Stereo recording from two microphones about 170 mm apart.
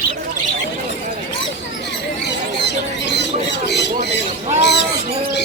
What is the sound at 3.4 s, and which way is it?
Squawk, 90° left.